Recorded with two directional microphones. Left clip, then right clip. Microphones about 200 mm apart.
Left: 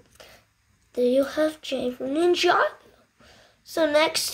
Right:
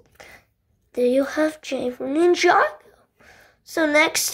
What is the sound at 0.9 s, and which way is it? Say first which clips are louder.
Speech: right 2 dB; 15° right (ahead or behind).